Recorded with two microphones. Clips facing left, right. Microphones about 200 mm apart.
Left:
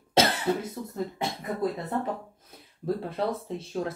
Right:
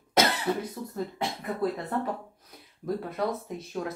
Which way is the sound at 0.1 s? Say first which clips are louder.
Left 1 dB; 30° left (ahead or behind).